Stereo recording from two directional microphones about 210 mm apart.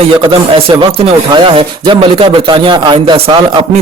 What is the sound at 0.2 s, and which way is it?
Speech, 25° right (ahead or behind).